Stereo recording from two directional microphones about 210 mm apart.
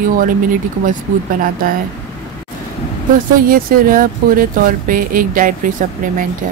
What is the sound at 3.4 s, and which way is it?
Speech, 45° right (ahead or behind).